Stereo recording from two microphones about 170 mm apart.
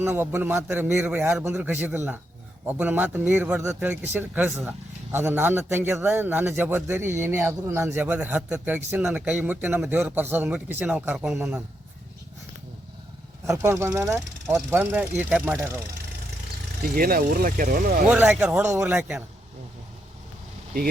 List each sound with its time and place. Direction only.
0.0 s a man's voice: 15° right (ahead or behind)
13.5 s a man's voice: 15° right (ahead or behind)
16.8 s speech: 60° right (ahead or behind)
18.1 s a man's voice: 10° right (ahead or behind)